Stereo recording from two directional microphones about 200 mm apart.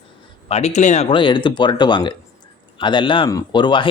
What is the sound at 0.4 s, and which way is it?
Speech, 30° left (ahead or behind).